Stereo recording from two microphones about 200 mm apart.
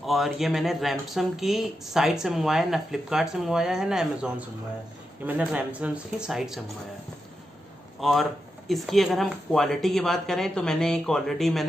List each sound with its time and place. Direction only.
0.0 s speech: centre (ahead or behind)
8.0 s speech: centre (ahead or behind)